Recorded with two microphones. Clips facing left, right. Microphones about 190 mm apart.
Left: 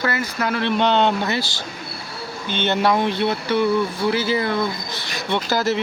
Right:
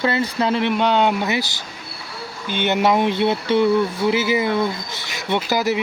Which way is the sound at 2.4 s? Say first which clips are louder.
Right 1 dB; 15° right (ahead or behind).